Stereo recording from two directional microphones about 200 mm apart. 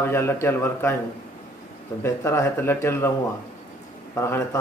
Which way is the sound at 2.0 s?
15° left (ahead or behind).